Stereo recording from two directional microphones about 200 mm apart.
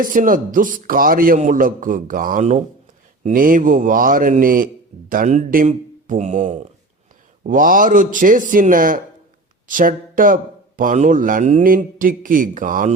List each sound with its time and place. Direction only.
0.0 s speech: 40° right (ahead or behind)